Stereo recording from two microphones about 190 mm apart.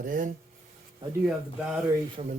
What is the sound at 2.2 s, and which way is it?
Speech, 35° right (ahead or behind).